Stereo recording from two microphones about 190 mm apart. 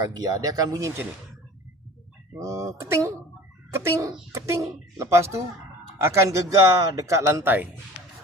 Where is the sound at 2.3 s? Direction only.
15° right (ahead or behind).